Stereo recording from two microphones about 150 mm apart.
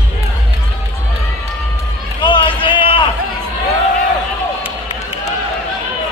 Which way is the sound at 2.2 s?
35° left (ahead or behind).